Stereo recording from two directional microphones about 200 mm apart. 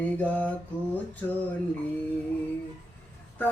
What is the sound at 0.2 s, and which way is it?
Speech, 10° left (ahead or behind).